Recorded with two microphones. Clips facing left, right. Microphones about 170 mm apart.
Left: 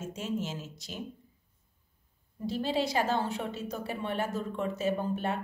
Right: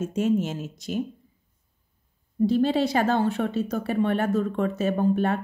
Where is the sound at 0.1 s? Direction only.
55° right (ahead or behind).